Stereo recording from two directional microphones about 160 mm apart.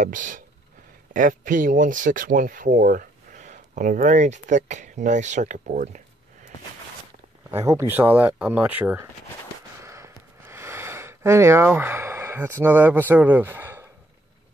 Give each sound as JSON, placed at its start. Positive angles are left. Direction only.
{"t": 0.0, "sound": "speech", "side_deg": -55}
{"t": 7.5, "sound": "speech", "side_deg": -15}
{"t": 9.8, "sound": "a sound", "side_deg": -20}